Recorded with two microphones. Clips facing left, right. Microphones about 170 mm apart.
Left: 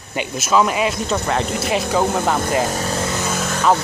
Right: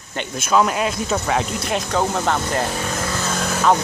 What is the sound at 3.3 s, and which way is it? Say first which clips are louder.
Vehicle: left 1 dB; 5° left (ahead or behind).